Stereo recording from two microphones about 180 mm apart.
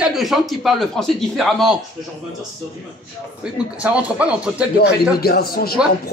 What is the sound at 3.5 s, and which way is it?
A man's voice, 5° right (ahead or behind).